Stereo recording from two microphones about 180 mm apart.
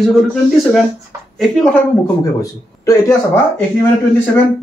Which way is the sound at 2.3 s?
15° left (ahead or behind).